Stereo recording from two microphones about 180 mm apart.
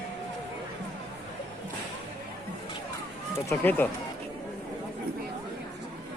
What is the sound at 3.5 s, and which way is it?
Speech, 10° left (ahead or behind).